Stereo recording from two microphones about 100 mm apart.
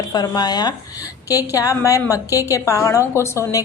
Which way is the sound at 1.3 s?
35° left (ahead or behind).